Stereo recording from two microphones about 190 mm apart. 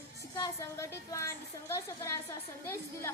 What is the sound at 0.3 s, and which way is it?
A woman's voice, 20° left (ahead or behind).